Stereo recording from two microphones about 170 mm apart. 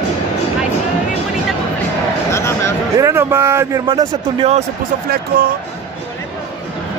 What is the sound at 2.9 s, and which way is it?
Speech, 15° right (ahead or behind).